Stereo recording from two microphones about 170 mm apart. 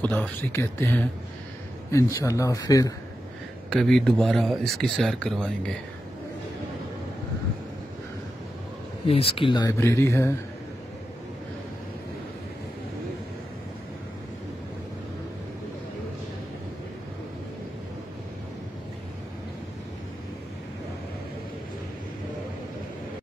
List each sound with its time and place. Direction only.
0.0 s speech: 10° left (ahead or behind)
3.7 s speech: centre (ahead or behind)
9.0 s speech: 35° left (ahead or behind); by 10.3 s 15° left (ahead or behind)